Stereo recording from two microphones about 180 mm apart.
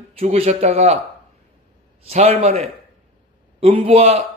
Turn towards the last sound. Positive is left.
turn(degrees=-35)  # may be behind; listen again after turning